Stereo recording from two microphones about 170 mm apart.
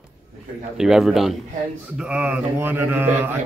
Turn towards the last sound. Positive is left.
turn(degrees=-10)  # may be behind; listen again after turning